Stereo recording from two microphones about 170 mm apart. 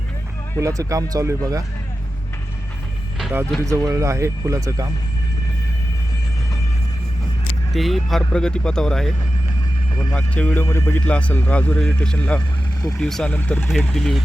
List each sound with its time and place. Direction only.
0.6 s speech: 20° right (ahead or behind)
3.8 s speech: 20° right (ahead or behind)
7.7 s a man's voice: centre (ahead or behind)